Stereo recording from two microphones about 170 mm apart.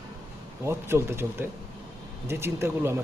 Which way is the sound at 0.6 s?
15° right (ahead or behind).